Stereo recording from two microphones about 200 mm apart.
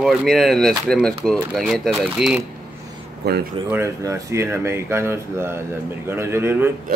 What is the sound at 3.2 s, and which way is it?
Speech, 55° right (ahead or behind).